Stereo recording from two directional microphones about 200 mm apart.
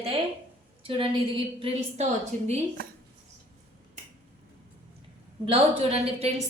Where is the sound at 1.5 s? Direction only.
30° right (ahead or behind).